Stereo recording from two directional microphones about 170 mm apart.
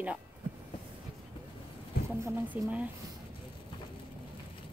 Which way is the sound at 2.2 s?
15° right (ahead or behind).